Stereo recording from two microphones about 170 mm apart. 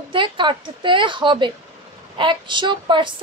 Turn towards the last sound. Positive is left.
turn(degrees=-30)  # may be behind; listen again after turning